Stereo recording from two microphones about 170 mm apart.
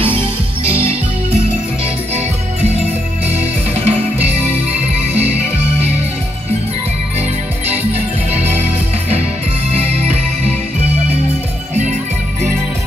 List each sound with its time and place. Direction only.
0.7 s music: 35° right (ahead or behind)
3.3 s music: 40° right (ahead or behind)
9.7 s music: 40° right (ahead or behind)
11.7 s music: 40° right (ahead or behind)